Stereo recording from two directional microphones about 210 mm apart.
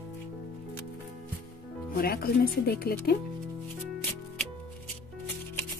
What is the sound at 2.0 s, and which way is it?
Speech, 45° left (ahead or behind).